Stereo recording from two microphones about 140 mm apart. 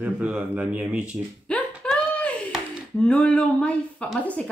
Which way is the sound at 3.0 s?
10° left (ahead or behind).